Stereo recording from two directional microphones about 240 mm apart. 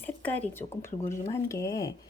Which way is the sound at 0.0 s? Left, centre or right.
Centre.